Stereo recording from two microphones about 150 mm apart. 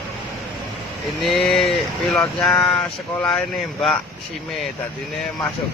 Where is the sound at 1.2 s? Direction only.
Centre (ahead or behind).